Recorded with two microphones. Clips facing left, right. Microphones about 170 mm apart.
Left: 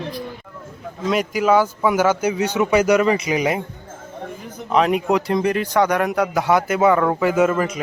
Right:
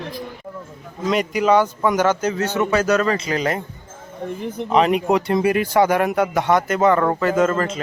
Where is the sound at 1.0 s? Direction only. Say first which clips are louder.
Even; centre (ahead or behind).